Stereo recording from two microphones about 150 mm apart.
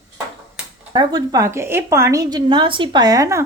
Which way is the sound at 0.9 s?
25° right (ahead or behind).